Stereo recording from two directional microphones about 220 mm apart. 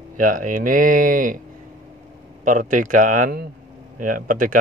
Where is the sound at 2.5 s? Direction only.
35° right (ahead or behind).